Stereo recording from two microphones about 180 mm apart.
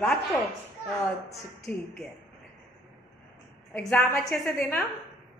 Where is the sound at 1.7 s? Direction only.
5° left (ahead or behind).